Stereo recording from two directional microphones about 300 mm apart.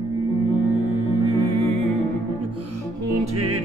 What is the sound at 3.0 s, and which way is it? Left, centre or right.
Music, right.